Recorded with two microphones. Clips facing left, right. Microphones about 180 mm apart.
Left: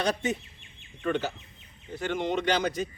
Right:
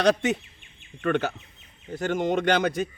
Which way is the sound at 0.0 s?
75° right (ahead or behind).